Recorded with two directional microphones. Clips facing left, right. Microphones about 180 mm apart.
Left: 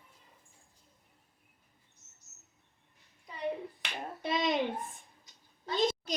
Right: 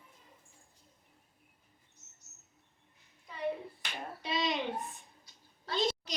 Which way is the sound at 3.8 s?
50° left (ahead or behind).